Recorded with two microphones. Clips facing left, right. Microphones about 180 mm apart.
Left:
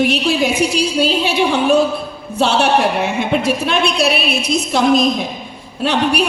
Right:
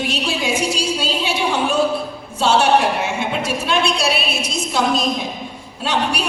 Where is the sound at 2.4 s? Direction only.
60° left (ahead or behind).